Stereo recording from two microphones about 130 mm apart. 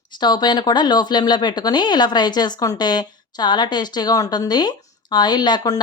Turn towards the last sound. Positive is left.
turn(degrees=30)  # may be behind; listen again after turning